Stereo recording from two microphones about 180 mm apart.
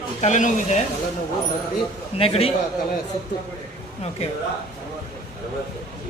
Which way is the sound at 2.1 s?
30° left (ahead or behind).